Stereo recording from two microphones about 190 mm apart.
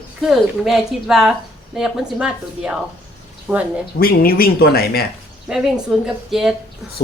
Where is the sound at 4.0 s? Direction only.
50° left (ahead or behind).